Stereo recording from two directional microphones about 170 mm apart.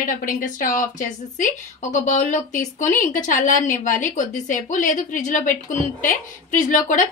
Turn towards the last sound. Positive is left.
turn(degrees=50)  # may be behind; listen again after turning